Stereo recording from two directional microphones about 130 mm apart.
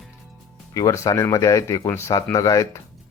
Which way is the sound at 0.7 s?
25° left (ahead or behind).